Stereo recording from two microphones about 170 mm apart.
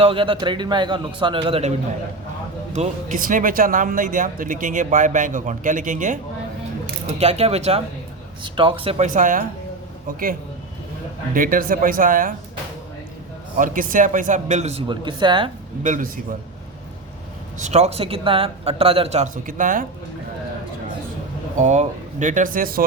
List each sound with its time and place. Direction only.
0.0 s a man's voice: 30° right (ahead or behind)
2.7 s speech: 45° right (ahead or behind)
7.2 s speech: 35° right (ahead or behind)
9.0 s speech: 50° right (ahead or behind)
11.3 s speech: 55° right (ahead or behind)
13.6 s speech: 50° right (ahead or behind); by 15.4 s 30° right (ahead or behind)
15.8 s speech: 50° right (ahead or behind)
17.6 s speech: 40° right (ahead or behind)
21.6 s speech: 45° right (ahead or behind)